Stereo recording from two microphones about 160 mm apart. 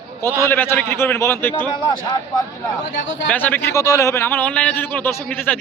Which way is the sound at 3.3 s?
10° left (ahead or behind).